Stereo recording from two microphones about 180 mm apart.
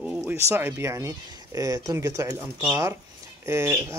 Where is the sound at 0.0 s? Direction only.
5° right (ahead or behind).